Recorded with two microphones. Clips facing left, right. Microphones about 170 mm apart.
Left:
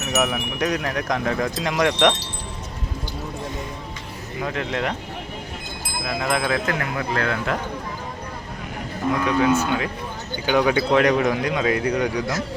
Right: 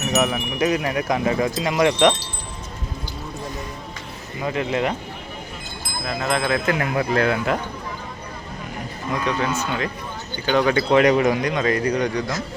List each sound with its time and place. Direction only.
0.0 s speech: centre (ahead or behind)
4.4 s speech: 5° right (ahead or behind)
6.2 s speech: 10° left (ahead or behind)
6.7 s speech: 15° right (ahead or behind)
9.2 s speech: 10° left (ahead or behind)
10.9 s speech: centre (ahead or behind)